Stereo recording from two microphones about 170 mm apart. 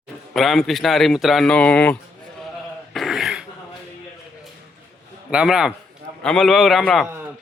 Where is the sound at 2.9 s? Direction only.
Centre (ahead or behind).